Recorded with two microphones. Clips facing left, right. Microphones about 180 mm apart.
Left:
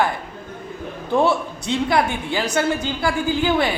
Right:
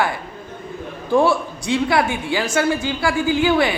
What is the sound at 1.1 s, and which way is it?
A man's voice, 20° left (ahead or behind).